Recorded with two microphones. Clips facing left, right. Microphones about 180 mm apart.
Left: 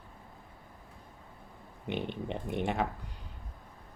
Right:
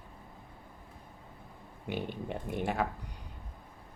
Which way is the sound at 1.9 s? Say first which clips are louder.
Left 1 dB; 5° right (ahead or behind).